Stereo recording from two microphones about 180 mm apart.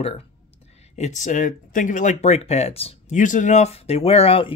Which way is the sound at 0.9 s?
40° left (ahead or behind).